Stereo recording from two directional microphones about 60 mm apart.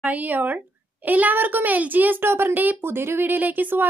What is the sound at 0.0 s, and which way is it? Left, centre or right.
A child's voice, right.